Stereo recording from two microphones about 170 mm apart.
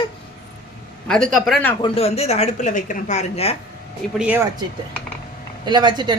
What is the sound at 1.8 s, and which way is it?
Speech, 35° left (ahead or behind).